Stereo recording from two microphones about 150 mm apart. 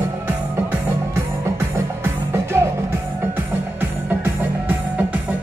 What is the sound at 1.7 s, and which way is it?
Music, 15° right (ahead or behind).